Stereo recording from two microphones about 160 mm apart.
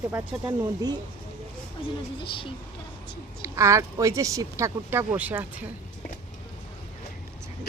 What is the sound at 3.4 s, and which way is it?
Speech, 20° right (ahead or behind).